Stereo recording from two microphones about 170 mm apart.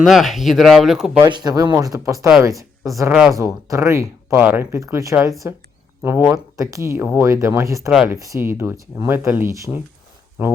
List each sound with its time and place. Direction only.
0.0 s speech: centre (ahead or behind)
1.2 s speech: 25° right (ahead or behind)
3.1 s speech: 5° right (ahead or behind)
3.3 s speech: 20° right (ahead or behind)
7.9 s speech: centre (ahead or behind)
8.1 s speech: 15° right (ahead or behind)